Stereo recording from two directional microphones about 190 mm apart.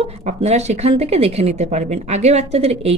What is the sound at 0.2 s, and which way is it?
A woman's voice, 35° right (ahead or behind).